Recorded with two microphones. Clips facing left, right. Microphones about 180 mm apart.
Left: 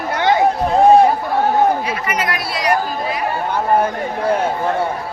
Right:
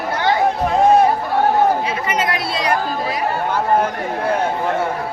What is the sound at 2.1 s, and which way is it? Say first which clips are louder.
Chatter: right 1 dB; 25° right (ahead or behind).